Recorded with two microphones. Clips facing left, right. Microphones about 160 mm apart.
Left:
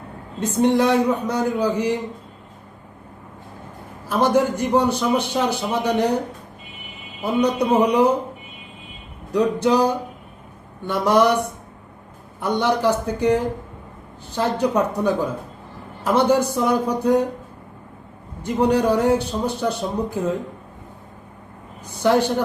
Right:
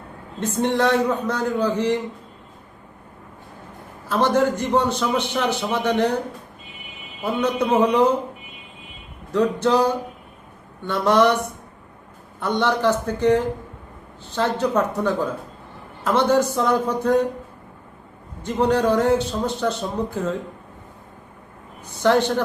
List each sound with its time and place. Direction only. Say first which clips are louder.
0.3 s a man's voice: left 3 dB; 10° left (ahead or behind)
4.1 s a man's voice: left 1 dB; 10° left (ahead or behind)
7.2 s a man's voice: left 2 dB; 10° left (ahead or behind)
9.3 s a man's voice: left 1 dB; 10° left (ahead or behind)
12.4 s a man's voice: left 1 dB; 10° left (ahead or behind)
18.4 s a man's voice: left 1 dB; 10° left (ahead or behind)
22.0 s a man's voice: even; 10° left (ahead or behind)